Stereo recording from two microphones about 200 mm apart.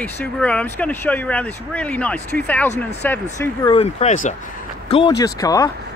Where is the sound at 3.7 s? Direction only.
30° left (ahead or behind).